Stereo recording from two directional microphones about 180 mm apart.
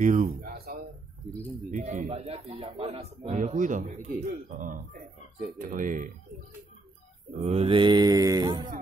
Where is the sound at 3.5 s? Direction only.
45° right (ahead or behind).